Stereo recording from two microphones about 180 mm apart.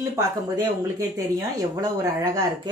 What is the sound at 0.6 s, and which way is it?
Speech, 15° right (ahead or behind).